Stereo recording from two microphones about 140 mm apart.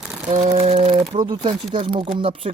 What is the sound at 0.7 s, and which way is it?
Speech, 50° right (ahead or behind).